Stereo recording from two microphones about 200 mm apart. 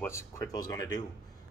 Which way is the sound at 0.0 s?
15° left (ahead or behind).